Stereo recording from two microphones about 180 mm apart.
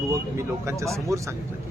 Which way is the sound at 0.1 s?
15° right (ahead or behind).